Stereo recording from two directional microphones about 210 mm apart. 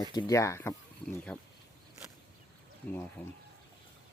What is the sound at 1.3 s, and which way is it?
Speech, 5° left (ahead or behind).